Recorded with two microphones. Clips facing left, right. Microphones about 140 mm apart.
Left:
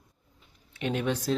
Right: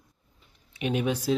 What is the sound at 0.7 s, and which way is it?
Speech, 15° right (ahead or behind).